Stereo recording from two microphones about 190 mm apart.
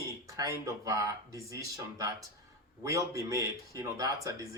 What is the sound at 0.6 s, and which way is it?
Speech, 15° right (ahead or behind).